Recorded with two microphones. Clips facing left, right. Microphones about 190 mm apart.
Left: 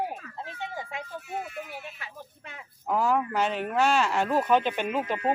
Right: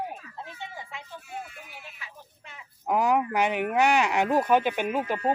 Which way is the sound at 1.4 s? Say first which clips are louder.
Left 7 dB; 60° left (ahead or behind).